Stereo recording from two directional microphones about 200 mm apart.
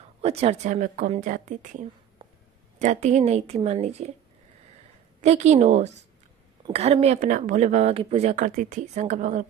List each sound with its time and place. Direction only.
0.2 s speech: 30° right (ahead or behind)
5.2 s speech: 35° right (ahead or behind)